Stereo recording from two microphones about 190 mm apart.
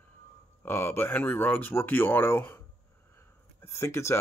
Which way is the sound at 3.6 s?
15° left (ahead or behind).